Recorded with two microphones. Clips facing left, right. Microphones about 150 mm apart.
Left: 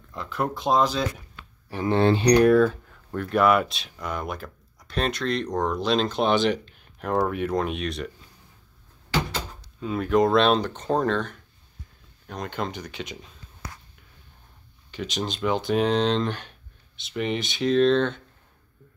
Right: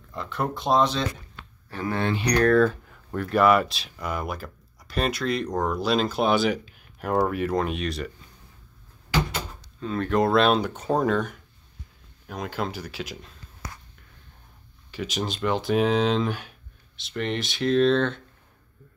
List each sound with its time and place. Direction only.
0.1 s speech: centre (ahead or behind)
1.7 s speech: 20° left (ahead or behind)
2.0 s speech: 30° left (ahead or behind)
2.3 s speech: 10° left (ahead or behind)
9.8 s speech: 10° left (ahead or behind)
14.9 s speech: 5° right (ahead or behind)